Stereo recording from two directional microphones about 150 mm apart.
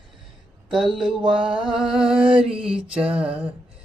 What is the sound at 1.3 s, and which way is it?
Music, 5° right (ahead or behind).